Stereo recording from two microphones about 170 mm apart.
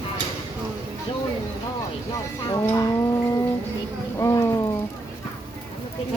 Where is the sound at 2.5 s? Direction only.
20° left (ahead or behind).